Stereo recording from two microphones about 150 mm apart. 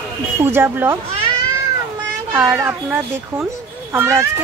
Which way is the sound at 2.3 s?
20° right (ahead or behind).